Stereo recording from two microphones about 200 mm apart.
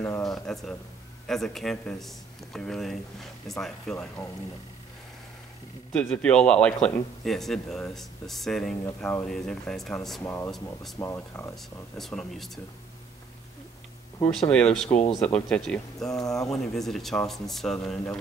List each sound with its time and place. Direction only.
0.2 s a man's voice: centre (ahead or behind)
5.9 s a man's voice: 5° left (ahead or behind)
10.2 s speech: 15° left (ahead or behind)
10.5 s a man's voice: centre (ahead or behind)
11.0 s speech: 15° left (ahead or behind)
11.5 s a man's voice: centre (ahead or behind)
14.2 s a man's voice: 5° left (ahead or behind)